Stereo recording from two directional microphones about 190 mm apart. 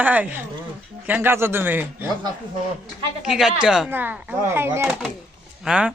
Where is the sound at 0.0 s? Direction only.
10° right (ahead or behind).